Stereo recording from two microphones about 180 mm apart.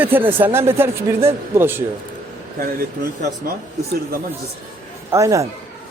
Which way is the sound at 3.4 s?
55° right (ahead or behind).